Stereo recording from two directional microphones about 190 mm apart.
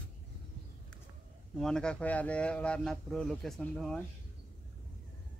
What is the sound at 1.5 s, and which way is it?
Speech, centre (ahead or behind).